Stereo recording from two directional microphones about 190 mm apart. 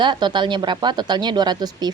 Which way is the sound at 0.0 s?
25° right (ahead or behind).